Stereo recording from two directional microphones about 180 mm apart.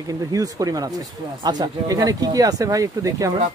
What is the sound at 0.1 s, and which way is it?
Speech, 20° right (ahead or behind).